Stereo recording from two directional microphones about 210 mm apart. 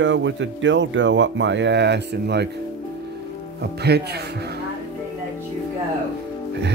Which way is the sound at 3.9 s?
50° right (ahead or behind).